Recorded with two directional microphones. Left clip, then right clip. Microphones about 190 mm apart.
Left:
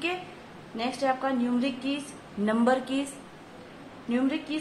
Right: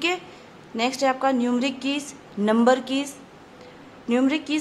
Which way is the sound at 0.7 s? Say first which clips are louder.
Right 5 dB; 55° right (ahead or behind).